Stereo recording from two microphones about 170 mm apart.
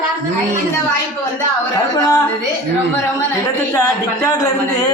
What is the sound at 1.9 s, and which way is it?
Speech, 15° left (ahead or behind).